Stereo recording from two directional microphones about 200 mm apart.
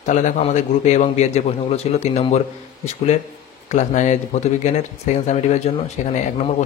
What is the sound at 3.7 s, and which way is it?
A man's voice, 35° left (ahead or behind).